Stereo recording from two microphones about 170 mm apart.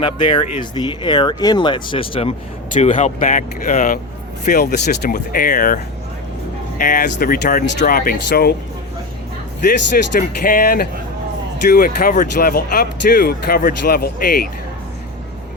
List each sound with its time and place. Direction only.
0.0 s speech: 30° left (ahead or behind)
2.7 s speech: 45° left (ahead or behind); by 8.5 s 65° left (ahead or behind)
10.2 s speech: 55° left (ahead or behind)